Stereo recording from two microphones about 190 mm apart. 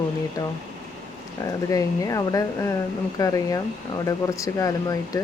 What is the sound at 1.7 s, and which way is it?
Speech, 15° left (ahead or behind).